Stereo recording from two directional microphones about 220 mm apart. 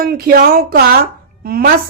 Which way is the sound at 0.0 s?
45° right (ahead or behind).